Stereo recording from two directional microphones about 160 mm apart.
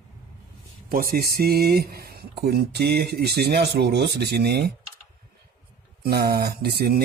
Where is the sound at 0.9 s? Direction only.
65° right (ahead or behind); by 4.7 s 90° right.